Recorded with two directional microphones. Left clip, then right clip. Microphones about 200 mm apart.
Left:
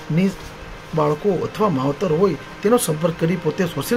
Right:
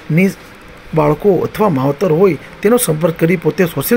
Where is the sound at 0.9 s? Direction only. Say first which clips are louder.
Right 7 dB; 25° right (ahead or behind).